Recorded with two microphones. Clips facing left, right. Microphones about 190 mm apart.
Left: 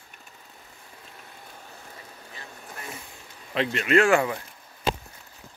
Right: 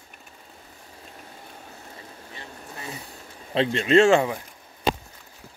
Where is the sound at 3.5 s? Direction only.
30° right (ahead or behind).